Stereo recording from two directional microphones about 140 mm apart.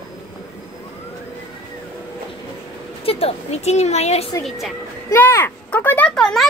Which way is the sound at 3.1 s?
45° left (ahead or behind).